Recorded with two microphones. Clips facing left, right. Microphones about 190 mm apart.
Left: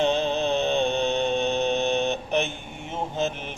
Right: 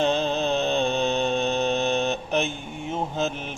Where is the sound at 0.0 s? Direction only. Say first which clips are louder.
Even; 15° left (ahead or behind).